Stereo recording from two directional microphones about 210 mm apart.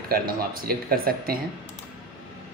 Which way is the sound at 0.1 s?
45° right (ahead or behind).